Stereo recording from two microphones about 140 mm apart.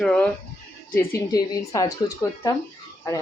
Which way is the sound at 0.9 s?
20° left (ahead or behind).